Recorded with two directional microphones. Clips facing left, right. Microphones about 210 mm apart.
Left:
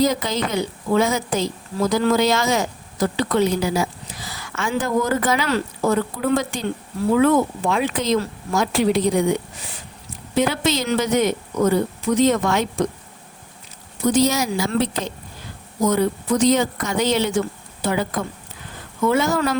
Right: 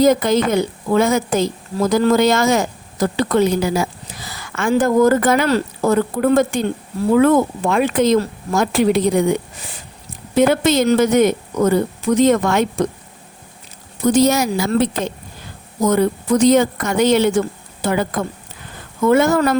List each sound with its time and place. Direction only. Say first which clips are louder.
0.0 s a woman's voice: right 6 dB; 50° right (ahead or behind)
10.3 s a woman's voice: right 6 dB; 50° right (ahead or behind)
14.1 s a woman's voice: right 4 dB; 55° right (ahead or behind)